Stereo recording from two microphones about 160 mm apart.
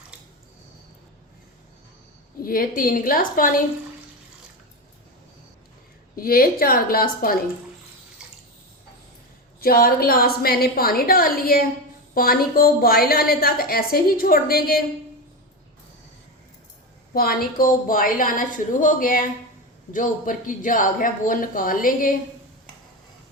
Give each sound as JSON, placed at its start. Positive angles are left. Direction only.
{"t": 2.4, "sound": "speech", "side_deg": 65}
{"t": 6.1, "sound": "a woman's voice", "side_deg": 65}
{"t": 9.6, "sound": "a woman's voice", "side_deg": 65}
{"t": 17.2, "sound": "speech", "side_deg": 65}